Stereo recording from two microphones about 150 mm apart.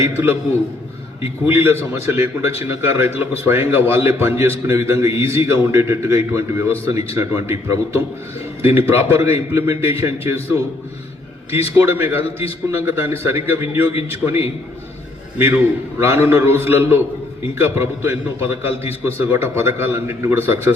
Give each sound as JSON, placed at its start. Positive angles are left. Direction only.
{"t": 0.0, "sound": "a man's voice", "side_deg": -15}
{"t": 1.5, "sound": "a man's voice", "side_deg": -15}
{"t": 8.6, "sound": "a man's voice", "side_deg": -15}
{"t": 11.5, "sound": "a man's voice", "side_deg": -15}